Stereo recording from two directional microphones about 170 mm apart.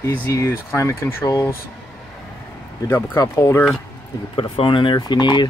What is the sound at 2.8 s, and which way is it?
Speech, 20° left (ahead or behind).